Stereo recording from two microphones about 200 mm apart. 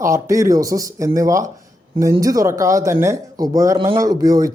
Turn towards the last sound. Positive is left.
turn(degrees=-20)  # may be behind; listen again after turning